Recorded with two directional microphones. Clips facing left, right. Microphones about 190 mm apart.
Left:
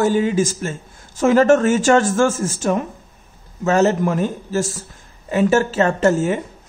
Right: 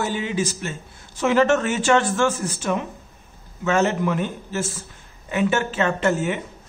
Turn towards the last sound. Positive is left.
turn(degrees=40)  # may be behind; listen again after turning